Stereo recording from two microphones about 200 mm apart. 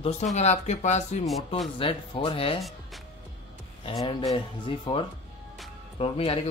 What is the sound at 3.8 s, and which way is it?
Speech, 25° left (ahead or behind).